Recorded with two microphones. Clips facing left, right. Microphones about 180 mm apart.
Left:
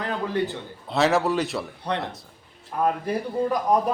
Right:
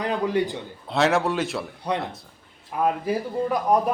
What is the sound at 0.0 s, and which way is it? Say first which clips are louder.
Speech: right 3 dB; 15° right (ahead or behind).